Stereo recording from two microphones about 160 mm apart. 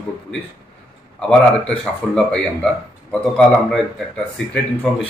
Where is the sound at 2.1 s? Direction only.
5° left (ahead or behind).